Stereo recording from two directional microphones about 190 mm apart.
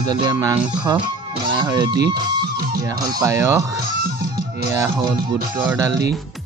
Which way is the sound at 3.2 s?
15° right (ahead or behind).